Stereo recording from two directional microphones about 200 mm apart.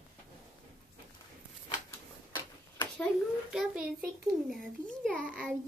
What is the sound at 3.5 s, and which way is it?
Speech, centre (ahead or behind).